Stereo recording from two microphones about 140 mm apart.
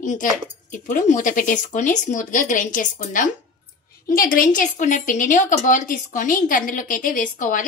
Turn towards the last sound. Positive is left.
turn(degrees=70)  # may be behind; listen again after turning